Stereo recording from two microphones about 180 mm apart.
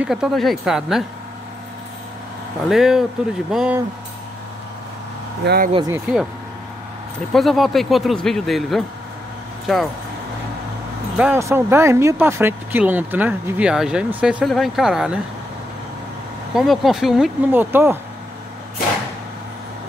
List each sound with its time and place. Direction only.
0.0 s speech: 5° right (ahead or behind)
2.7 s speech: 5° right (ahead or behind)
5.4 s speech: 60° right (ahead or behind)
5.9 s speech: 5° right (ahead or behind)
7.3 s speech: centre (ahead or behind)
11.1 s speech: 10° right (ahead or behind)
16.5 s speech: centre (ahead or behind)